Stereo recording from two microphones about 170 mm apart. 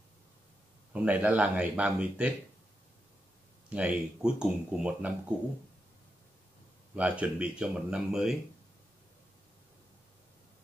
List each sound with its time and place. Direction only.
0.9 s speech: 10° right (ahead or behind)
3.7 s speech: 5° right (ahead or behind)
7.0 s speech: 5° right (ahead or behind)